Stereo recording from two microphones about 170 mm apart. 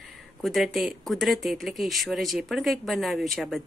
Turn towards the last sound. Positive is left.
turn(degrees=0)  # may be behind; listen again after turning